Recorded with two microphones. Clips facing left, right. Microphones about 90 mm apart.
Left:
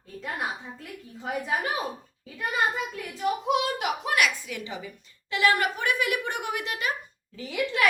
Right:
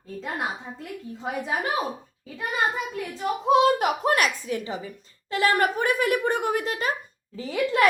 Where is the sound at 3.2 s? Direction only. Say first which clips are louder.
Right 6 dB; 35° right (ahead or behind).